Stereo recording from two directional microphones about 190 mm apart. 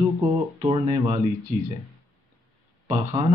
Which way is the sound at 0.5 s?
25° right (ahead or behind).